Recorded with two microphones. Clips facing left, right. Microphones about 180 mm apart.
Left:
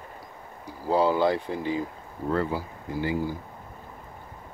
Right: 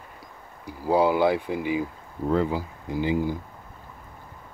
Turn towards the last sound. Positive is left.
turn(degrees=-20)  # may be behind; listen again after turning